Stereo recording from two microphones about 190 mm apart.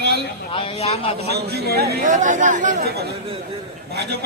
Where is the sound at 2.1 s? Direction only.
40° right (ahead or behind).